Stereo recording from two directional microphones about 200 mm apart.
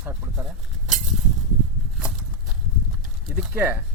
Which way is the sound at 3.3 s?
10° right (ahead or behind).